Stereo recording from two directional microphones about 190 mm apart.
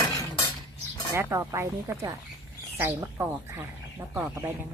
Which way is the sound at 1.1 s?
15° right (ahead or behind).